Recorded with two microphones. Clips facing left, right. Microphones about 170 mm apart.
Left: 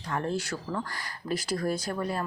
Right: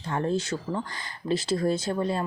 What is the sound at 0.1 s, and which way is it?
A woman's voice, 25° right (ahead or behind).